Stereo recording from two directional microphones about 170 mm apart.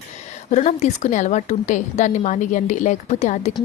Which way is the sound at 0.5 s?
45° left (ahead or behind).